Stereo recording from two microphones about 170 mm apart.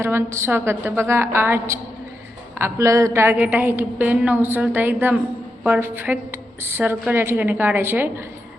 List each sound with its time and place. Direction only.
0.0 s a woman's voice: 15° right (ahead or behind)